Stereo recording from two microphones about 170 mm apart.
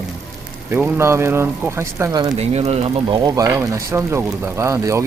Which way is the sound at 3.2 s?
20° right (ahead or behind).